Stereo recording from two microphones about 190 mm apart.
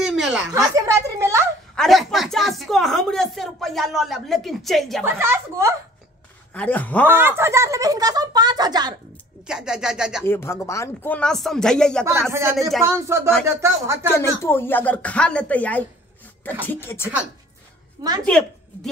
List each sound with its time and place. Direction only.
0.0 s a sound: centre (ahead or behind)
0.7 s a sound: 15° right (ahead or behind)
1.8 s a sound: centre (ahead or behind)
5.0 s a woman's voice: 10° right (ahead or behind)
6.5 s speech: 10° left (ahead or behind)
7.1 s speech: 10° right (ahead or behind)
9.5 s speech: 5° right (ahead or behind)
10.2 s speech: 10° left (ahead or behind)
12.0 s a woman's voice: 15° right (ahead or behind)
14.1 s speech: 15° left (ahead or behind)
18.3 s speech: 5° left (ahead or behind)